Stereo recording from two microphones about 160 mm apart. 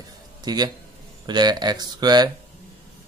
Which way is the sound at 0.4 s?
25° right (ahead or behind).